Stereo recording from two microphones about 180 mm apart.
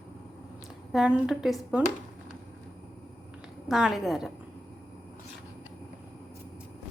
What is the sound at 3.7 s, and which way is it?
Dishes, centre (ahead or behind).